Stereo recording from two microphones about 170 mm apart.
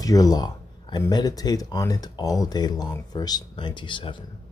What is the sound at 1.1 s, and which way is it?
Speech, 25° left (ahead or behind).